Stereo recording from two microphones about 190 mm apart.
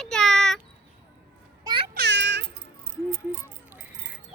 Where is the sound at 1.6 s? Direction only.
25° right (ahead or behind).